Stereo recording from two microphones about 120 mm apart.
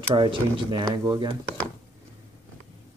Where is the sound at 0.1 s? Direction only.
45° right (ahead or behind).